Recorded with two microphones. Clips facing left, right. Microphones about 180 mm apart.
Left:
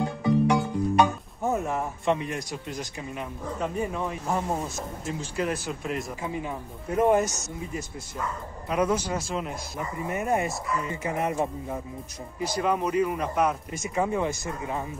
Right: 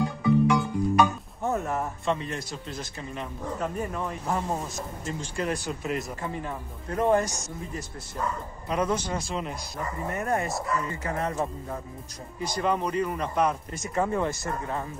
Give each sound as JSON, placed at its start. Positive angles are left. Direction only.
{"t": 0.0, "sound": "music", "side_deg": 30}
{"t": 2.0, "sound": "speech", "side_deg": 15}
{"t": 3.6, "sound": "speech", "side_deg": 0}
{"t": 8.6, "sound": "speech", "side_deg": 10}